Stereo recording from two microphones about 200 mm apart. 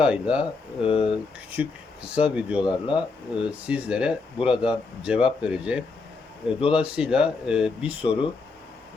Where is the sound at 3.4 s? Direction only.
5° right (ahead or behind).